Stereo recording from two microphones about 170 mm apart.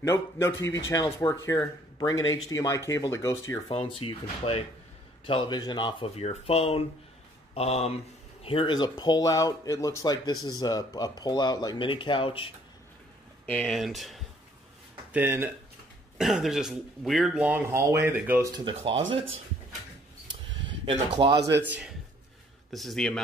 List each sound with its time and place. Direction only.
0.0 s a man's voice: 15° left (ahead or behind); by 12.5 s 30° left (ahead or behind)
13.5 s speech: 5° left (ahead or behind)
15.1 s speech: 15° right (ahead or behind)
16.2 s speech: centre (ahead or behind)
18.6 s speech: 30° right (ahead or behind)
20.6 s speech: 30° right (ahead or behind)
21.5 s speech: 5° right (ahead or behind)